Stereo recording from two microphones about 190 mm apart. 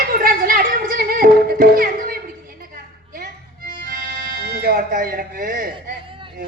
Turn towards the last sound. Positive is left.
turn(degrees=-50)  # may be behind; listen again after turning